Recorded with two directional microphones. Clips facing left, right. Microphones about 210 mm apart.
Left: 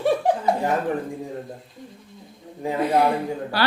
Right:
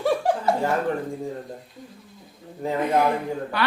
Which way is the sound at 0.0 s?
20° left (ahead or behind).